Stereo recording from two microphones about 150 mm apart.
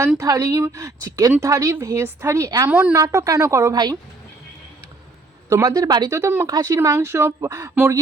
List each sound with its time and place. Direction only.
0.2 s speech: 20° right (ahead or behind)
2.6 s a woman's voice: 10° right (ahead or behind)
2.9 s speech: 20° right (ahead or behind)
5.5 s speech: 25° right (ahead or behind)